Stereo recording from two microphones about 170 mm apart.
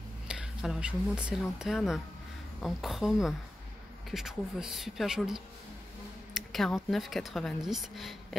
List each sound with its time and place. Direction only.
0.3 s speech: 5° right (ahead or behind)